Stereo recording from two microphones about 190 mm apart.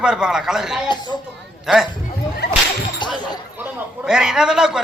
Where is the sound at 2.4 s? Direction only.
60° left (ahead or behind).